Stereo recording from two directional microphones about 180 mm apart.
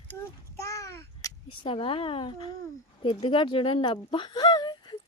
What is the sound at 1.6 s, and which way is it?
Speech, 30° left (ahead or behind).